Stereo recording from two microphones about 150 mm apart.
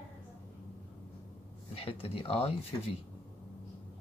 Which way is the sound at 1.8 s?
40° left (ahead or behind).